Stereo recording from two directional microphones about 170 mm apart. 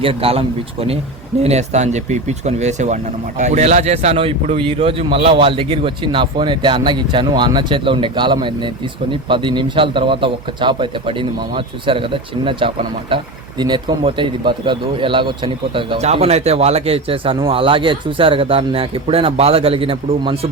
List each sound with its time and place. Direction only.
0.0 s a man's voice: 35° right (ahead or behind)